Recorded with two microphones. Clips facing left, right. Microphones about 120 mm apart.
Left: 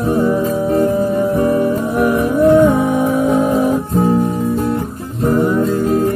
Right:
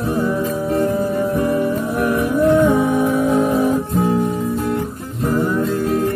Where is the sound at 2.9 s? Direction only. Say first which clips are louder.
Left 2 dB; 20° left (ahead or behind).